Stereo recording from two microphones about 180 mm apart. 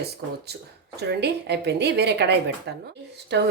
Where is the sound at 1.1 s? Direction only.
65° right (ahead or behind).